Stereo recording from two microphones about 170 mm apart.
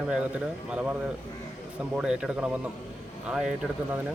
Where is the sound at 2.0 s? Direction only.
5° right (ahead or behind).